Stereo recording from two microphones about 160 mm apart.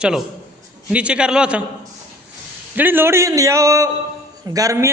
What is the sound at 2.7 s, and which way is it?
A man's voice, 15° right (ahead or behind).